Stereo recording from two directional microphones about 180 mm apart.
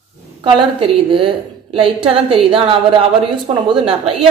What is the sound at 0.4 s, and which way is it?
A woman's voice, 30° right (ahead or behind).